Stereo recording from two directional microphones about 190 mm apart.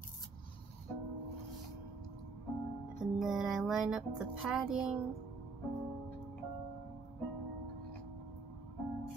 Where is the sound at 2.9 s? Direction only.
Centre (ahead or behind).